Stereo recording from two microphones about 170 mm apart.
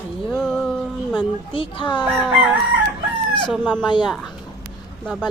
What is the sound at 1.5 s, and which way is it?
Speech, 30° left (ahead or behind).